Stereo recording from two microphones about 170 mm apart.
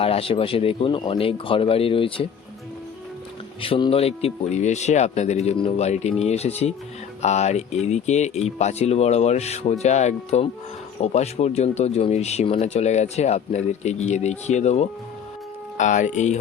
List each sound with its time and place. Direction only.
0.0 s speech: 35° left (ahead or behind)
3.6 s speech: 30° left (ahead or behind)